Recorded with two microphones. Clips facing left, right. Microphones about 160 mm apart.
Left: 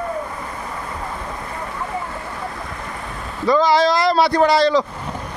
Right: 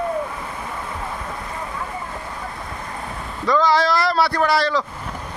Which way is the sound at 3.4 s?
10° left (ahead or behind).